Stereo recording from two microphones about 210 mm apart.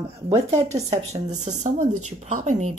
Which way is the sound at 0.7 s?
35° right (ahead or behind).